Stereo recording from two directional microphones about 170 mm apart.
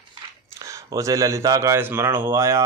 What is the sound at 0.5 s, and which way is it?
Speech, 20° right (ahead or behind).